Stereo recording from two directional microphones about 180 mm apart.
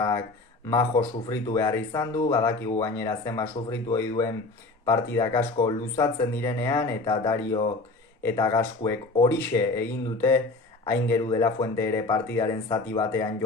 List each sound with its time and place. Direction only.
0.7 s speech: 15° left (ahead or behind)